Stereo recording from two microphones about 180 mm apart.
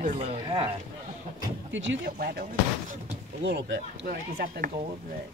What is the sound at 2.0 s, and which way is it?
Speech, 55° right (ahead or behind).